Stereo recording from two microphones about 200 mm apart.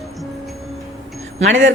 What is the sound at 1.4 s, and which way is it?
Speech, 70° right (ahead or behind).